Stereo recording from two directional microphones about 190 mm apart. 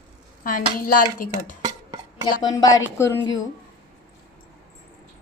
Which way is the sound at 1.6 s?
20° right (ahead or behind).